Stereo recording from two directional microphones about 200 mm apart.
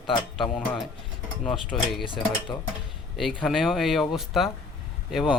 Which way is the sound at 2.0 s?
25° left (ahead or behind).